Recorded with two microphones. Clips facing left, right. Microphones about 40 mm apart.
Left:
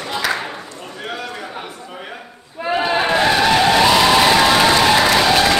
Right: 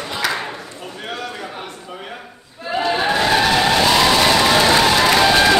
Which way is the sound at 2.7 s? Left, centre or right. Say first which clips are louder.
Left 1 dB; centre.